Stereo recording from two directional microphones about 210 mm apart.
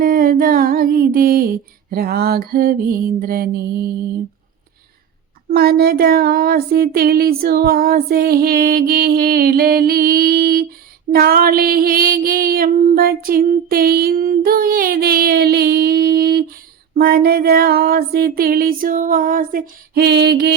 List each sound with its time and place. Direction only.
0.0 s female singing: 45° right (ahead or behind)
5.5 s female singing: 50° right (ahead or behind)